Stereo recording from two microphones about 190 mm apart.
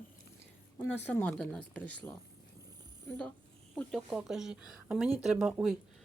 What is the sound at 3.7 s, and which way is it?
Speech, centre (ahead or behind).